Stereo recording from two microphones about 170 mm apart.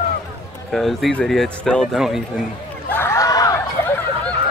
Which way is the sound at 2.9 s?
15° left (ahead or behind).